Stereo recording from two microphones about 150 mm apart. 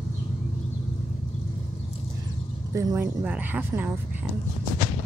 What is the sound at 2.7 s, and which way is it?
Speech, 20° right (ahead or behind).